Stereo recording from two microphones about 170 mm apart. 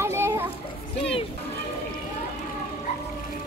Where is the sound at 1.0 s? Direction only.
30° left (ahead or behind).